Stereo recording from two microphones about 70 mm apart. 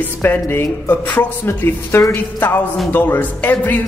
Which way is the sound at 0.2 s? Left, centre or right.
Left.